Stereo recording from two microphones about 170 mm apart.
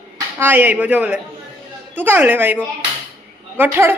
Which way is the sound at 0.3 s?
10° right (ahead or behind).